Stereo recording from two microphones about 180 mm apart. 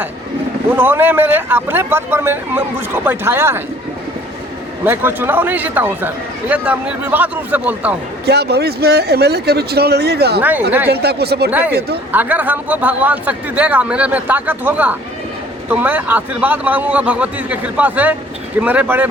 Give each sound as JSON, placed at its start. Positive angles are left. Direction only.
{"t": 0.7, "sound": "a man's voice", "side_deg": -10}
{"t": 4.9, "sound": "a man's voice", "side_deg": -10}
{"t": 8.3, "sound": "speech", "side_deg": -65}
{"t": 12.1, "sound": "a man's voice", "side_deg": -10}